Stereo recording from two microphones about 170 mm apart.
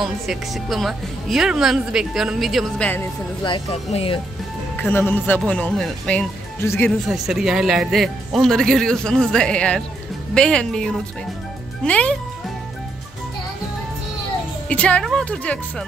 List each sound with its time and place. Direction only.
0.0 s a woman's voice: centre (ahead or behind)
3.4 s speech: 35° left (ahead or behind)
4.7 s speech: 10° left (ahead or behind)
7.1 s a woman's voice: centre (ahead or behind)
14.7 s speech: 5° left (ahead or behind)